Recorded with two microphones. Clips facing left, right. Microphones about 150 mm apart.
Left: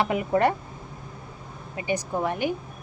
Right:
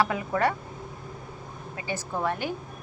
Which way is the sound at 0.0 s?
20° left (ahead or behind).